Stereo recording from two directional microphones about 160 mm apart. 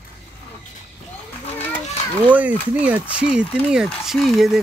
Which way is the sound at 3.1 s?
5° right (ahead or behind).